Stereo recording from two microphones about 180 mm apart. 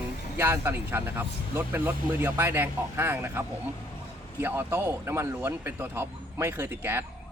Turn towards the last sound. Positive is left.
turn(degrees=-10)  # may be behind; listen again after turning